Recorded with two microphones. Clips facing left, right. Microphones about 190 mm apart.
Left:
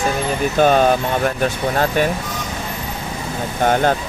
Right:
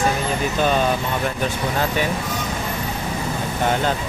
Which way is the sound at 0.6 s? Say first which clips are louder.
Left 6 dB; 50° left (ahead or behind).